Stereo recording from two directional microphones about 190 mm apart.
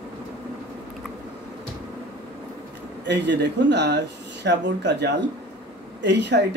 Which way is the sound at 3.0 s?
65° right (ahead or behind).